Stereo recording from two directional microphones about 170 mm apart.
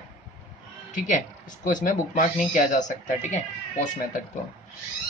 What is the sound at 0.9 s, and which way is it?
Speech, 50° left (ahead or behind).